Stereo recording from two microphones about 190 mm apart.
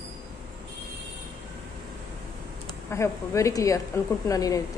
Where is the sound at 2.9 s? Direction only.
15° left (ahead or behind).